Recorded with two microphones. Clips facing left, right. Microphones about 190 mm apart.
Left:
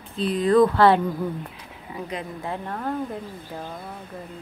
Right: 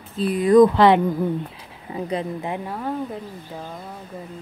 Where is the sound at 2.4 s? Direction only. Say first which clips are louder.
Right 2 dB; 15° right (ahead or behind).